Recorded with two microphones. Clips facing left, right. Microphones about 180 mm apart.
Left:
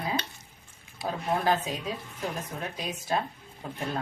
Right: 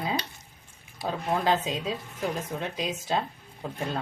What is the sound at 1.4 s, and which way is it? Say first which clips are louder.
A woman's voice: right 1 dB; 20° right (ahead or behind).